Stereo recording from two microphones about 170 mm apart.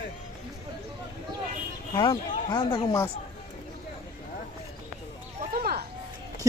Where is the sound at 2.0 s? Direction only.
25° left (ahead or behind).